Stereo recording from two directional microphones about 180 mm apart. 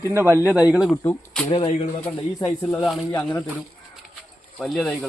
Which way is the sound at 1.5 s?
25° left (ahead or behind).